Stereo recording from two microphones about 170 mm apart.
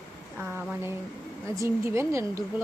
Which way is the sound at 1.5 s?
15° right (ahead or behind).